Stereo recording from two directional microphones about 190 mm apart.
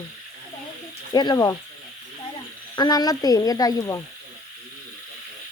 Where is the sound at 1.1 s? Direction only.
20° left (ahead or behind).